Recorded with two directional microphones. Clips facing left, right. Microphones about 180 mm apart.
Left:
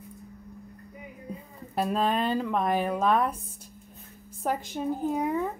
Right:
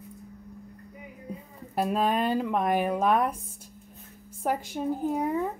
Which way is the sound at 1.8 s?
10° right (ahead or behind).